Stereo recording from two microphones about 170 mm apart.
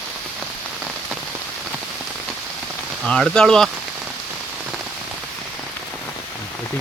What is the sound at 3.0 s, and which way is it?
Speech, centre (ahead or behind).